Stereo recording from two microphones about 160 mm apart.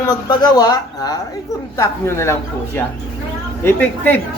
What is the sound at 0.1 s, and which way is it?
Speech, 25° left (ahead or behind).